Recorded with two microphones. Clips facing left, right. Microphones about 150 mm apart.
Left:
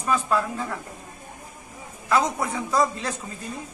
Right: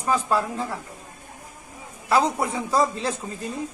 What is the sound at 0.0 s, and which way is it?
Speech, 30° right (ahead or behind).